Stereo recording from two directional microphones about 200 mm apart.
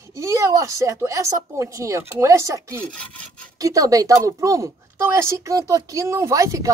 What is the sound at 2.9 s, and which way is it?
Speech, 5° left (ahead or behind).